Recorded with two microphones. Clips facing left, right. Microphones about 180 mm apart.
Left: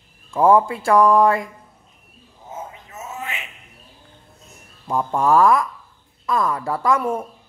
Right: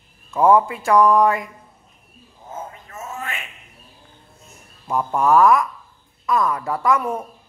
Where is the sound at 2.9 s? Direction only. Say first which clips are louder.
Right 1 dB; 5° left (ahead or behind).